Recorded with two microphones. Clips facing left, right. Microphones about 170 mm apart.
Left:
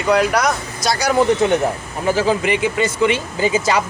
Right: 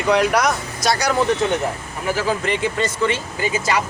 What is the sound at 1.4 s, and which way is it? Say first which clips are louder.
Speech: left 4 dB; 20° left (ahead or behind).